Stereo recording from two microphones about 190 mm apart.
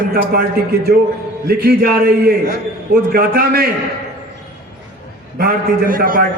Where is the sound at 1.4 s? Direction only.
55° right (ahead or behind).